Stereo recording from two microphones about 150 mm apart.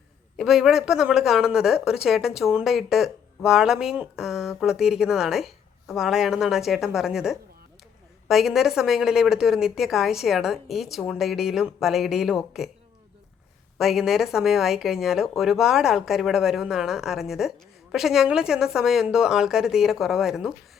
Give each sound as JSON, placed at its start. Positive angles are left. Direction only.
{"t": 0.3, "sound": "speech", "side_deg": 0}
{"t": 13.7, "sound": "speech", "side_deg": 0}